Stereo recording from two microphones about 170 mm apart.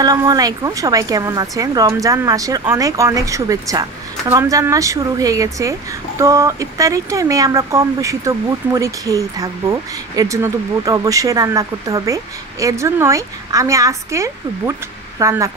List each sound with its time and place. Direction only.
0.0 s speech: 20° right (ahead or behind)